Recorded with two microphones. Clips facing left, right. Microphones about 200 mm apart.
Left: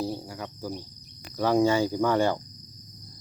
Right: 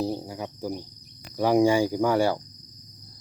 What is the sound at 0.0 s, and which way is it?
Cricket, 15° right (ahead or behind).